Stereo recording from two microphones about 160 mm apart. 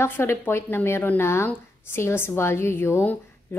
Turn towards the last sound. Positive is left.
turn(degrees=15)  # may be behind; listen again after turning